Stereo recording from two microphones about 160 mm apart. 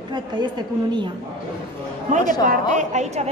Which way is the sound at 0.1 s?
30° right (ahead or behind).